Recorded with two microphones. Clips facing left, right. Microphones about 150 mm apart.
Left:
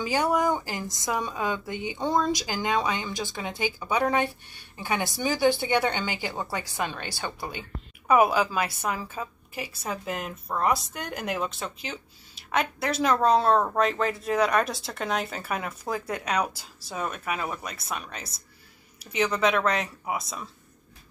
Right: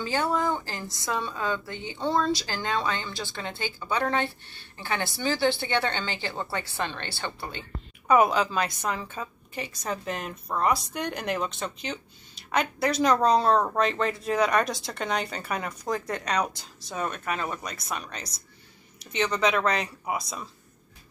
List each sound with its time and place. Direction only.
0.0 s a woman's voice: 15° left (ahead or behind)